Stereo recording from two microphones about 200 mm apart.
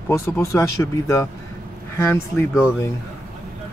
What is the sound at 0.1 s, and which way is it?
Speech, 15° left (ahead or behind).